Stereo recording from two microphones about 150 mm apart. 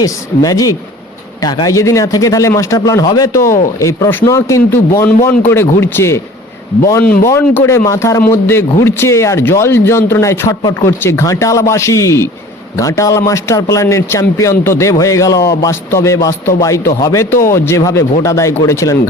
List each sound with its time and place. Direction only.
0.0 s a man's voice: 25° left (ahead or behind)
5.0 s speech: 10° left (ahead or behind)
7.3 s a man's voice: 20° left (ahead or behind)